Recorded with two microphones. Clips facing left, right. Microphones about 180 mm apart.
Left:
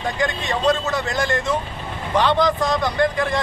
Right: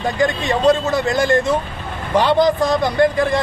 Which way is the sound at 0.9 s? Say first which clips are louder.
Right 6 dB; 30° right (ahead or behind).